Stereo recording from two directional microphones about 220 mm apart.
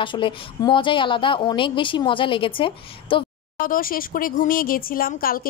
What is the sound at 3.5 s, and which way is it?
Speech, 40° left (ahead or behind).